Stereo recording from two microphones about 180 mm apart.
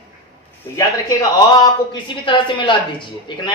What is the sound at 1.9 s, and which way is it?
A woman's voice, 25° left (ahead or behind).